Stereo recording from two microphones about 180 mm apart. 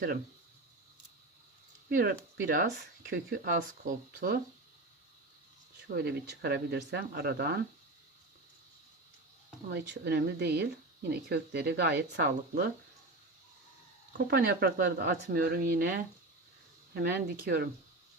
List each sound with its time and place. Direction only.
1.9 s speech: 50° right (ahead or behind)
5.9 s speech: 60° right (ahead or behind)
9.7 s speech: 70° right (ahead or behind)
14.2 s speech: 55° right (ahead or behind)